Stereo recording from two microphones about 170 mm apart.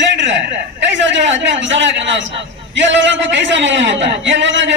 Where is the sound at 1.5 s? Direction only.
90° right.